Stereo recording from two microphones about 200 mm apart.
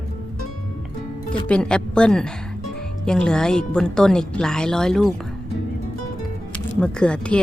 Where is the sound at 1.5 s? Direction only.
5° left (ahead or behind).